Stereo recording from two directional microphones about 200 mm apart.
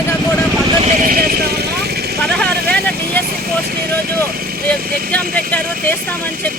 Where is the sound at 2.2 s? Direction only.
5° left (ahead or behind).